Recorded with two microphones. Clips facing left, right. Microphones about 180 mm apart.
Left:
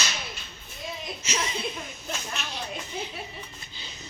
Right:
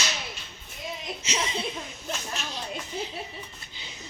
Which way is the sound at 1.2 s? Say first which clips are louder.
Right 1 dB; 25° right (ahead or behind).